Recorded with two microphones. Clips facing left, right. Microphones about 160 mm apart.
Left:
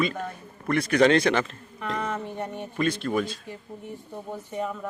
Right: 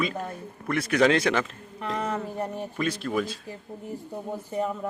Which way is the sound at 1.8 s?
35° right (ahead or behind).